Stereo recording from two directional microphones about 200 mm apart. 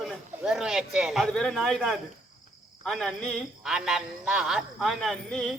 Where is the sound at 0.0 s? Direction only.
Centre (ahead or behind).